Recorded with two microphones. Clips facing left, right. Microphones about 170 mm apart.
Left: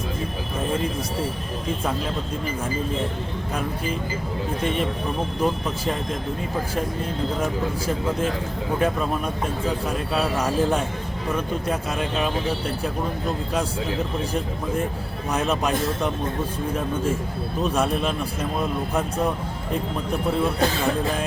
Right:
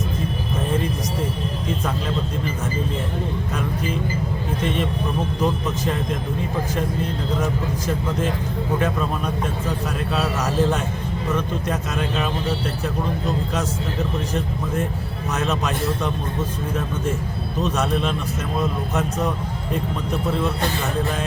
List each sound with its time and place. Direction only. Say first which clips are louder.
5.4 s a man's voice: right 1 dB; 10° left (ahead or behind)
8.8 s a man's voice: even; 10° left (ahead or behind)
15.3 s a man's voice: left 1 dB; 10° left (ahead or behind)
17.6 s a man's voice: right 1 dB; 10° left (ahead or behind)